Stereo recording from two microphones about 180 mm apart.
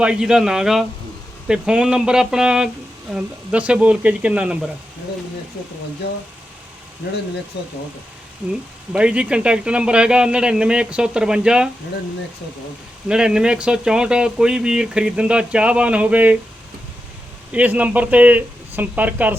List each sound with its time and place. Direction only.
0.0 s speech: 5° right (ahead or behind)
7.6 s speech: 70° left (ahead or behind)
8.4 s speech: 10° right (ahead or behind)
13.1 s speech: 5° right (ahead or behind)
17.5 s speech: 10° right (ahead or behind)